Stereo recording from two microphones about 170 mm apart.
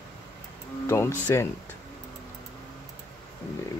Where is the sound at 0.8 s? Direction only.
15° left (ahead or behind).